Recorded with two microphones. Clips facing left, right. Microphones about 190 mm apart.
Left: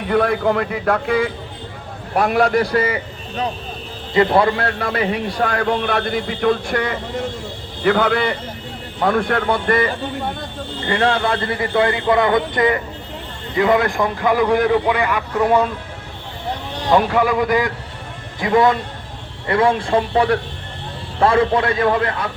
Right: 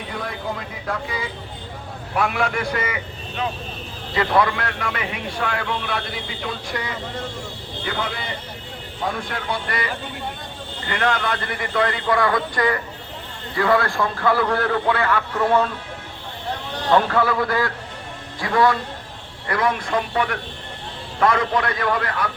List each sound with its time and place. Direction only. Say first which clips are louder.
0.1 s a man's voice: left 14 dB; 70° left (ahead or behind)
2.1 s a man's voice: left 7 dB; 40° left (ahead or behind)
10.8 s a man's voice: left 5 dB; 30° left (ahead or behind); by 15.7 s 15° left (ahead or behind)
16.9 s a man's voice: left 3 dB; 15° left (ahead or behind)